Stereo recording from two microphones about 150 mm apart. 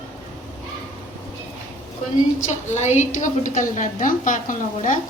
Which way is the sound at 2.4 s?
50° left (ahead or behind).